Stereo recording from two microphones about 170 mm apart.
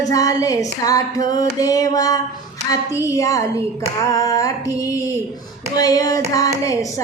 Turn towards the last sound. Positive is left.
turn(degrees=20)  # may be behind; listen again after turning